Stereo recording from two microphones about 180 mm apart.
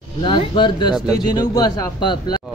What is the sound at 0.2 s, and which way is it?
A man's voice, 25° left (ahead or behind).